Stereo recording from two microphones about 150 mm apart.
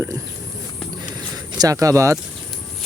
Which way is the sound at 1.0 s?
25° right (ahead or behind).